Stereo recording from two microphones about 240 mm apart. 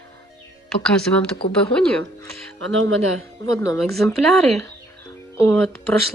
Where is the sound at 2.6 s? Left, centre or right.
Right.